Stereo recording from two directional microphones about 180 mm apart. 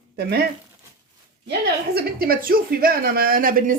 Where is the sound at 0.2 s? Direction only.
65° right (ahead or behind).